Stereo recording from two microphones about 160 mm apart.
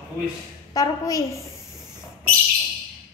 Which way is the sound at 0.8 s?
20° left (ahead or behind).